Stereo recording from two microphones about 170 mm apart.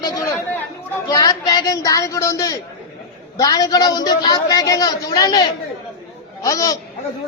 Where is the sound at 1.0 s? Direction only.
25° left (ahead or behind).